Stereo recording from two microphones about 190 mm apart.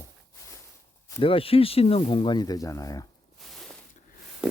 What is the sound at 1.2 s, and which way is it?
Speech, 30° left (ahead or behind).